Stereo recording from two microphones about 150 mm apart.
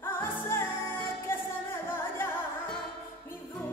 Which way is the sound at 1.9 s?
15° left (ahead or behind).